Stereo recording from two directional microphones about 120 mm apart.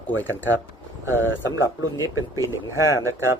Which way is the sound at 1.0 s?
25° right (ahead or behind).